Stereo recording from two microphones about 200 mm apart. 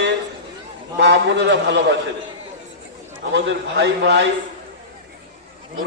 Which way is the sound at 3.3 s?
70° right (ahead or behind).